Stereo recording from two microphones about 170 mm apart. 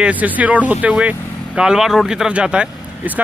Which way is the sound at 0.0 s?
10° right (ahead or behind).